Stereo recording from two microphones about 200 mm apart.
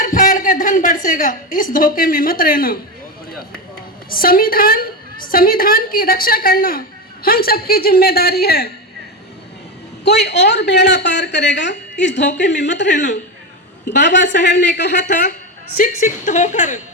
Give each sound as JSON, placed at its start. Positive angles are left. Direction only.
{"t": 0.0, "sound": "a woman's voice", "side_deg": 40}
{"t": 4.1, "sound": "a woman's voice", "side_deg": 45}
{"t": 10.0, "sound": "speech", "side_deg": 55}
{"t": 14.0, "sound": "speech", "side_deg": 60}
{"t": 15.8, "sound": "speech", "side_deg": 40}